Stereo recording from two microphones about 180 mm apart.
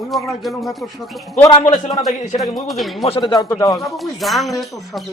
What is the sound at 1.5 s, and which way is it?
Speech, 40° left (ahead or behind).